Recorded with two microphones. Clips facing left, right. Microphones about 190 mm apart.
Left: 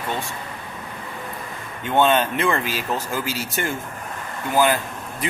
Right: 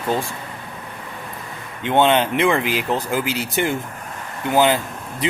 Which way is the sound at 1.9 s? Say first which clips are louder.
Right 2 dB; 20° right (ahead or behind).